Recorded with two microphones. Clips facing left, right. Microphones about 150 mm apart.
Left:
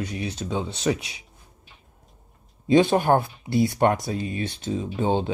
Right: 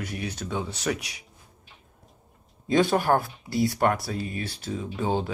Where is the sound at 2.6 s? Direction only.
15° left (ahead or behind).